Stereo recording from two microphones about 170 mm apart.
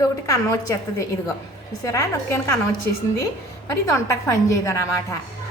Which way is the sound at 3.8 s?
20° left (ahead or behind).